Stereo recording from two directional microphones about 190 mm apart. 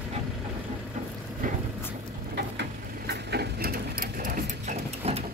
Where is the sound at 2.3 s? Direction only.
60° right (ahead or behind); by 5.2 s 35° right (ahead or behind).